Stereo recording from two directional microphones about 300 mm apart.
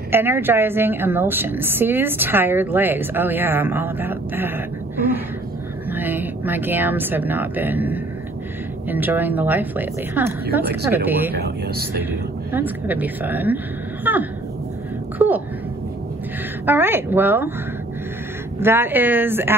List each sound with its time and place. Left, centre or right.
0.1 s a woman's voice: centre
5.9 s a woman's voice: centre
11.3 s speech: right
12.0 s a woman's voice: centre
15.1 s a sound: centre
16.6 s a woman's voice: centre
18.6 s a woman's voice: centre